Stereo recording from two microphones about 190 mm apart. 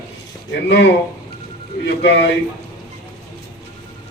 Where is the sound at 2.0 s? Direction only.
65° left (ahead or behind).